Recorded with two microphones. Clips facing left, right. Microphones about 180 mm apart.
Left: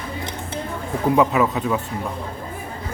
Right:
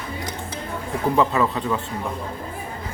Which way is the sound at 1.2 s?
5° left (ahead or behind).